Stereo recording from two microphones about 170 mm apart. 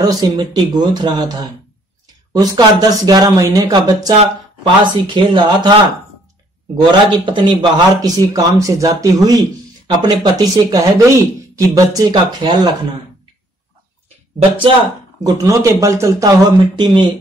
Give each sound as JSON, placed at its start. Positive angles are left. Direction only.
{"t": 0.0, "sound": "a man's voice", "side_deg": -25}
{"t": 6.8, "sound": "a man's voice", "side_deg": -30}
{"t": 15.2, "sound": "a man's voice", "side_deg": -20}